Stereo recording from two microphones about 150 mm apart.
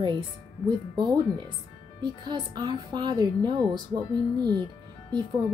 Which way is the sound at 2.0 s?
30° right (ahead or behind).